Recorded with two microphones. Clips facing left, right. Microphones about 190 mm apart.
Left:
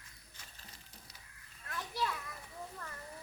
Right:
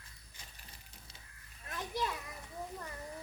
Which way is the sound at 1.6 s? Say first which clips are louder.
Right 1 dB; 20° right (ahead or behind).